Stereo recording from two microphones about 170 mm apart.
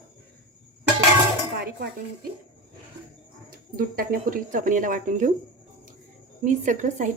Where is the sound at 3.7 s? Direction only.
60° right (ahead or behind).